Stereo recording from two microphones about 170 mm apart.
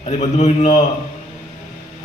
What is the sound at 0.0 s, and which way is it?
Speech, 40° left (ahead or behind).